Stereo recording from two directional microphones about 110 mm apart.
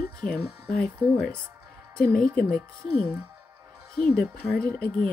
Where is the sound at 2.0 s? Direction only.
10° left (ahead or behind).